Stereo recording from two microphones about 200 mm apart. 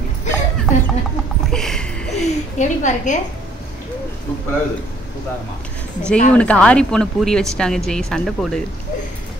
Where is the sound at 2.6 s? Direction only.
40° left (ahead or behind).